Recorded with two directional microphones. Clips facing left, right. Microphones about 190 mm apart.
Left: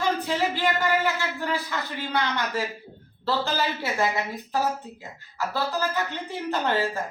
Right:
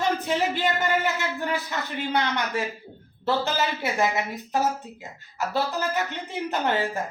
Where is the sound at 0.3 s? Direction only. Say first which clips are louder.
Right 1 dB; 20° right (ahead or behind).